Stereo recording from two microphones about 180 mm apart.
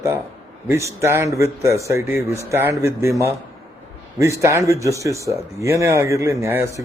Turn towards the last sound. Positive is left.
turn(degrees=-15)  # may be behind; listen again after turning